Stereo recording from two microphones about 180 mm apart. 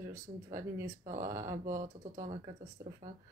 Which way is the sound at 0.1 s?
15° right (ahead or behind).